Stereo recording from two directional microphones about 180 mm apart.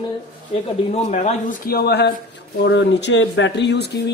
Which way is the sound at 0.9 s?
40° left (ahead or behind).